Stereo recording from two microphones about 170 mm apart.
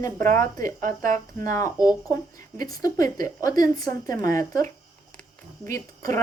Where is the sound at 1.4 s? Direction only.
20° left (ahead or behind).